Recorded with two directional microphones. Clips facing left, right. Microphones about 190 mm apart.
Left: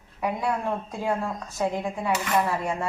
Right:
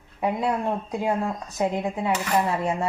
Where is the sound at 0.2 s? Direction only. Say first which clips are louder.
Right 2 dB; 25° right (ahead or behind).